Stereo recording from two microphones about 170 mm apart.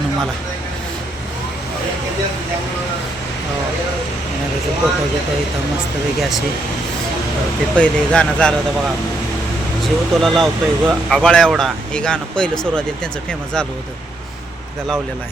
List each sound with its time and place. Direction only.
7.8 s speech: 5° left (ahead or behind)
9.8 s speech: centre (ahead or behind)